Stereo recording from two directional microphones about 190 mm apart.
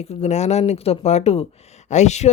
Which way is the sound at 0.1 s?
35° left (ahead or behind).